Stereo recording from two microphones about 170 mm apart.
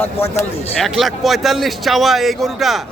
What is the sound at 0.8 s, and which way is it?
Speech, centre (ahead or behind).